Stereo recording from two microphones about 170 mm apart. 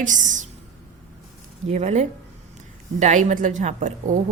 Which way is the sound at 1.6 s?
40° right (ahead or behind).